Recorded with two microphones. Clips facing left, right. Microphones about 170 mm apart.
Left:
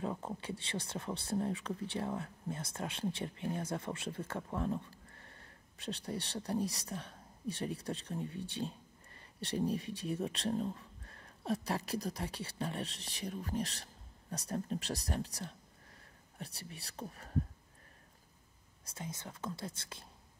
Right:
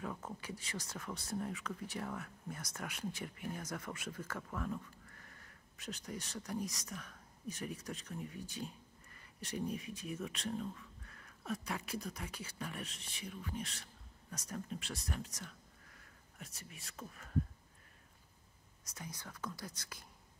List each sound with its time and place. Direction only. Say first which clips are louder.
0.0 s speech: left 5 dB; 30° left (ahead or behind)
18.9 s speech: left 4 dB; 25° left (ahead or behind)